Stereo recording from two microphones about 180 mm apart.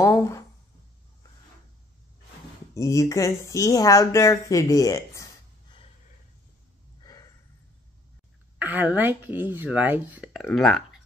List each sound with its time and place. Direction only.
0.0 s speech: 15° left (ahead or behind)
2.7 s speech: 20° left (ahead or behind)
7.0 s a sound: 20° left (ahead or behind)
8.5 s speech: 10° right (ahead or behind)